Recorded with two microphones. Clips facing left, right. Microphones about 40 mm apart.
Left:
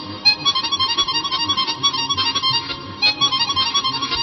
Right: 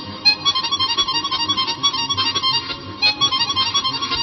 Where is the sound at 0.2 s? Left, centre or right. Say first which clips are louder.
Even; centre.